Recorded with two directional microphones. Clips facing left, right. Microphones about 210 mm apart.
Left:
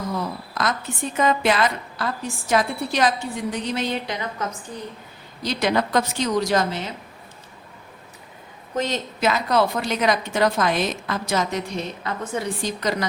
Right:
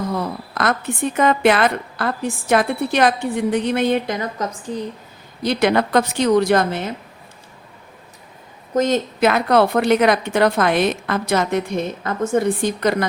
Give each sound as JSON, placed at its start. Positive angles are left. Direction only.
{"t": 0.1, "sound": "a woman's voice", "side_deg": -60}
{"t": 5.4, "sound": "a woman's voice", "side_deg": -60}
{"t": 8.7, "sound": "a woman's voice", "side_deg": -45}